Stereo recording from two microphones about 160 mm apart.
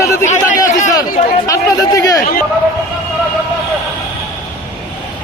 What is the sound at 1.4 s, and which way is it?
Speech, 20° left (ahead or behind).